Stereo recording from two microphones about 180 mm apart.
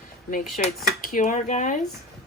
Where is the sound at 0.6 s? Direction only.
45° left (ahead or behind).